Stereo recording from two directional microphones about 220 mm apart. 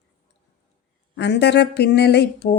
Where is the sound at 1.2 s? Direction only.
50° left (ahead or behind).